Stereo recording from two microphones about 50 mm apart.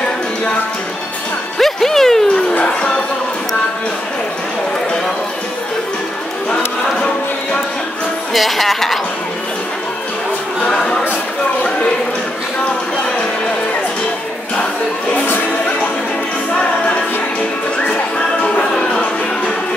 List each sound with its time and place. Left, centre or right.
1.6 s music: centre
2.5 s music: left
8.3 s speech: centre
10.6 s a sound: centre
18.4 s music: left